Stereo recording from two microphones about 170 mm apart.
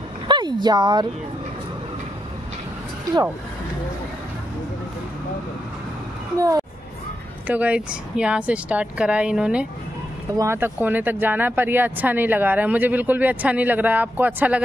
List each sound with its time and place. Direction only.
0.3 s a sound: 25° right (ahead or behind)
6.3 s speech: 20° right (ahead or behind)
7.4 s speech: 10° right (ahead or behind)
10.3 s speech: 15° right (ahead or behind)